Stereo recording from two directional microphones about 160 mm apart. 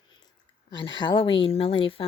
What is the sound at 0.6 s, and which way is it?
A woman's voice, 30° left (ahead or behind).